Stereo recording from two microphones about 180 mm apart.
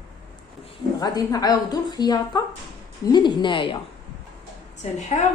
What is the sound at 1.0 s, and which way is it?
A woman's voice, 20° left (ahead or behind).